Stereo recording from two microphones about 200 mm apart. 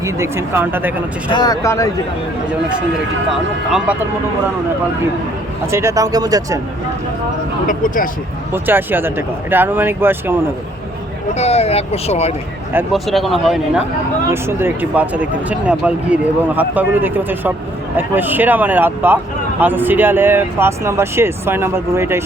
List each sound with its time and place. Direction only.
0.0 s speech: 15° right (ahead or behind)
1.3 s speech: 20° left (ahead or behind)
3.7 s speech: centre (ahead or behind)
5.7 s speech: 15° right (ahead or behind)
7.7 s speech: 40° left (ahead or behind)
8.5 s speech: 10° right (ahead or behind)
11.3 s speech: 30° left (ahead or behind)
12.7 s speech: centre (ahead or behind)
14.3 s speech: 10° right (ahead or behind)